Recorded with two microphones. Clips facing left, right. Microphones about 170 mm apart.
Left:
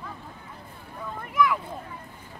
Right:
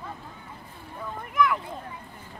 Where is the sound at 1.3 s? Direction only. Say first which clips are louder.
Left 1 dB; centre (ahead or behind).